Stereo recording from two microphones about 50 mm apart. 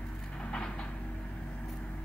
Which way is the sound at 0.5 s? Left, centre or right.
Centre.